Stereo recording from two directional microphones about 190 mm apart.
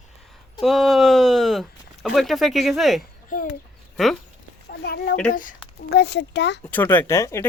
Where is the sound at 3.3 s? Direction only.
45° left (ahead or behind).